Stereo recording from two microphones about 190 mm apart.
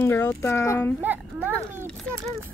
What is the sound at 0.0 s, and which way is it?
Speech, 10° left (ahead or behind).